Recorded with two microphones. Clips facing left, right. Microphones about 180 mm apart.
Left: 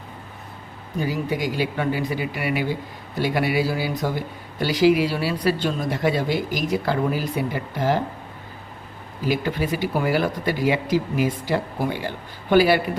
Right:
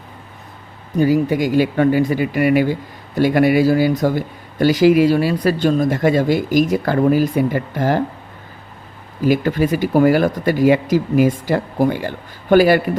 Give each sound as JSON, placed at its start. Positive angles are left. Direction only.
{"t": 1.0, "sound": "speech", "side_deg": -45}
{"t": 9.2, "sound": "speech", "side_deg": -45}